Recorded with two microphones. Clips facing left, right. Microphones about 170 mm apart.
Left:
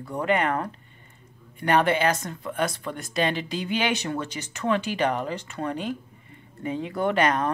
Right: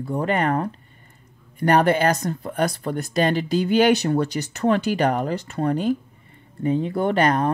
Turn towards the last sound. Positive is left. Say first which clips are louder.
# right 3 dB
turn(degrees=-35)  # may be behind; listen again after turning